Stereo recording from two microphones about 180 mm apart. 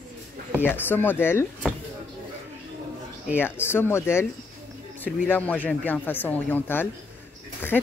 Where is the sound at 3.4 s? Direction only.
10° left (ahead or behind).